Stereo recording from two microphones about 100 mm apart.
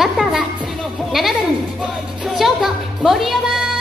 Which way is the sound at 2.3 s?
5° right (ahead or behind).